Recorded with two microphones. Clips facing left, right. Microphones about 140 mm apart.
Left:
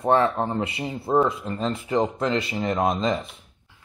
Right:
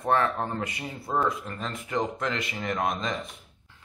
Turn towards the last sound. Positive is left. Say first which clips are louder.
# left 6 dB
turn(degrees=30)  # may be behind; listen again after turning